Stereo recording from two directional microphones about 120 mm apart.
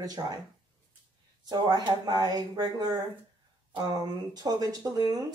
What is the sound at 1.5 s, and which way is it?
Speech, 35° right (ahead or behind).